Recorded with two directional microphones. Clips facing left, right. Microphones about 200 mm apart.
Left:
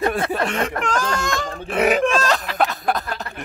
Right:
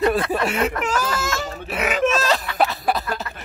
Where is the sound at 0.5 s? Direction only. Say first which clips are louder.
Right 1 dB; 5° right (ahead or behind).